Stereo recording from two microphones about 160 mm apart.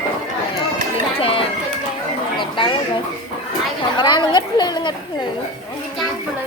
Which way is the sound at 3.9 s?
30° left (ahead or behind).